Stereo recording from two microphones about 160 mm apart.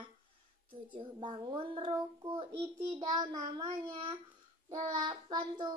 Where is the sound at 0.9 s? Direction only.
30° right (ahead or behind).